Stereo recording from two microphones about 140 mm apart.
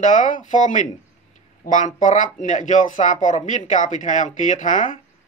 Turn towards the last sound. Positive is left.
turn(degrees=70)  # may be behind; listen again after turning